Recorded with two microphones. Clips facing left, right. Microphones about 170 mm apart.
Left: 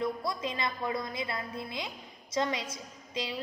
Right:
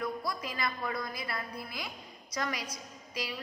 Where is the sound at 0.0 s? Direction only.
25° left (ahead or behind).